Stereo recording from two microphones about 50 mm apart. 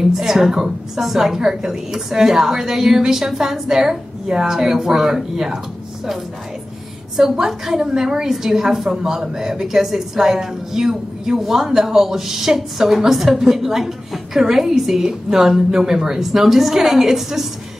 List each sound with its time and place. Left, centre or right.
0.1 s a woman's voice: centre
7.2 s a woman's voice: centre